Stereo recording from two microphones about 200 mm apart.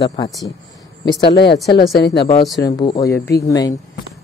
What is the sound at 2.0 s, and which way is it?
Speech, 55° left (ahead or behind).